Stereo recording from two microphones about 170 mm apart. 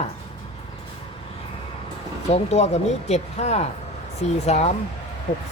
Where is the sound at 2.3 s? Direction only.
40° left (ahead or behind).